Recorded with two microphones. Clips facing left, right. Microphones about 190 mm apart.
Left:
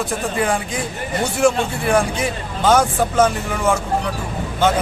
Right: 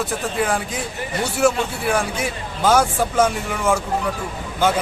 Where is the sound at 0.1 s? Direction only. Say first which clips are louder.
Left 2 dB; 5° right (ahead or behind).